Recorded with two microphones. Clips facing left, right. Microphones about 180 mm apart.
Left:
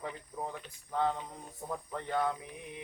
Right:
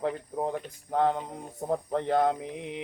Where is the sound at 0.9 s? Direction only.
70° right (ahead or behind).